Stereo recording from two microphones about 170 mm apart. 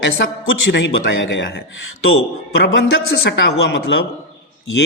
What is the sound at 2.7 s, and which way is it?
A woman's voice, 90° left.